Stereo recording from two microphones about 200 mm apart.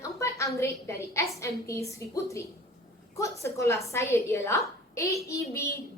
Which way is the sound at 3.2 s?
15° left (ahead or behind).